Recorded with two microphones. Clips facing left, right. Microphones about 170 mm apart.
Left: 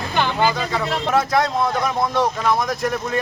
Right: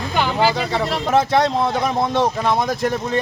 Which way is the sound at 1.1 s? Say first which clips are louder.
Right 3 dB; 25° right (ahead or behind).